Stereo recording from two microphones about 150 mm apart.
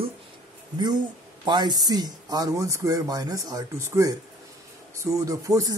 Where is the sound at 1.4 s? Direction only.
30° right (ahead or behind).